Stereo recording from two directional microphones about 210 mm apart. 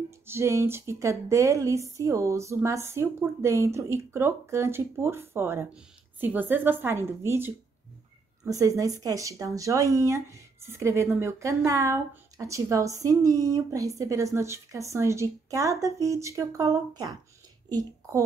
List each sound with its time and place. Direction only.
0.3 s a woman's voice: 15° right (ahead or behind)